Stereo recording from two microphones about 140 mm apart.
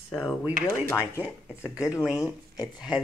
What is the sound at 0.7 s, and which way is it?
Speech, 20° left (ahead or behind).